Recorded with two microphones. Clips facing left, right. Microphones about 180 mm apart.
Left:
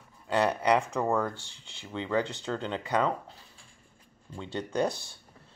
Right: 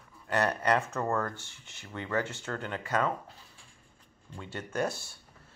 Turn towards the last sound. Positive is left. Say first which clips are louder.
# left 3 dB
turn(degrees=15)  # may be behind; listen again after turning